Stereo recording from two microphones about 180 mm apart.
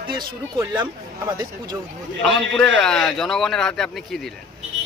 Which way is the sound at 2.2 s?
5° left (ahead or behind).